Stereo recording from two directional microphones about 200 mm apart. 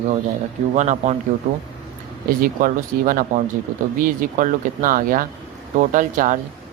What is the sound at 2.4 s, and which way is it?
A man's voice, 45° right (ahead or behind).